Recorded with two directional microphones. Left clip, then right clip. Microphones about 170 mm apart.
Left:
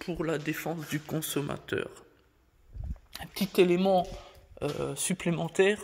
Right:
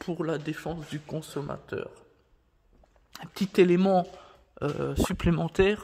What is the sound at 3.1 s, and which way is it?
Speech, 35° right (ahead or behind).